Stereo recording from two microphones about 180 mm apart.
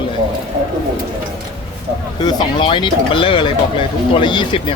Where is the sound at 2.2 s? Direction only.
25° left (ahead or behind).